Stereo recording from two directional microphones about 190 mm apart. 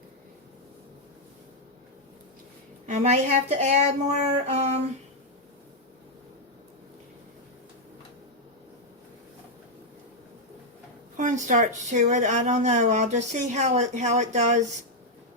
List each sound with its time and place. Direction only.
2.8 s speech: 35° right (ahead or behind)
11.2 s speech: 40° right (ahead or behind)